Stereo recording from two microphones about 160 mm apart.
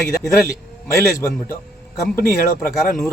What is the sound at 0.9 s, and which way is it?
Speech, 15° left (ahead or behind).